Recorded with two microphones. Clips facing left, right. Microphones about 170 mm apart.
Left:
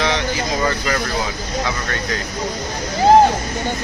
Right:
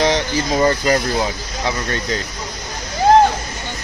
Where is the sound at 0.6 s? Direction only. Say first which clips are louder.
Right 7 dB; 35° right (ahead or behind).